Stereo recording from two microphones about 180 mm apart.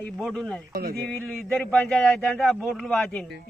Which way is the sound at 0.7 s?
60° right (ahead or behind).